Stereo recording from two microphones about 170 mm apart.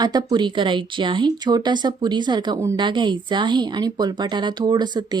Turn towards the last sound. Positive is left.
turn(degrees=-25)  # may be behind; listen again after turning